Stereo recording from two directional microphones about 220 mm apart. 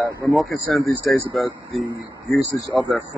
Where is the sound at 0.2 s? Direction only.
Centre (ahead or behind).